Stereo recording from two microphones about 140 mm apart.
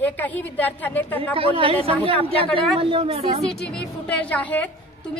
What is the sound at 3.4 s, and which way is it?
Speech, 5° left (ahead or behind).